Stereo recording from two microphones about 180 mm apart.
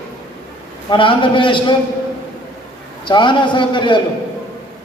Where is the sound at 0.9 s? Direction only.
30° left (ahead or behind).